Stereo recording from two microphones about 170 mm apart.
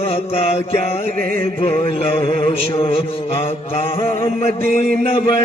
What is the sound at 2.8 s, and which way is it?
Mantra, 35° left (ahead or behind).